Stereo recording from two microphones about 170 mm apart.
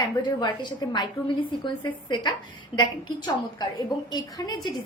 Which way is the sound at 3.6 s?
25° left (ahead or behind).